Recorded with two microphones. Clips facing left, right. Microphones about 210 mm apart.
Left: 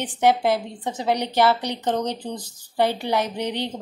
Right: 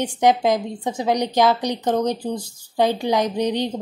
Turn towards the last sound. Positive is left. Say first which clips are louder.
# right 5 dB
turn(degrees=-15)  # may be behind; listen again after turning